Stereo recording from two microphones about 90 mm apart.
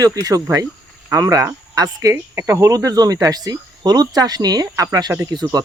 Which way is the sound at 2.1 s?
25° right (ahead or behind).